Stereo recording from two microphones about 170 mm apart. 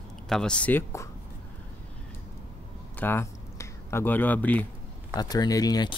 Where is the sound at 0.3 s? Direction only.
5° left (ahead or behind).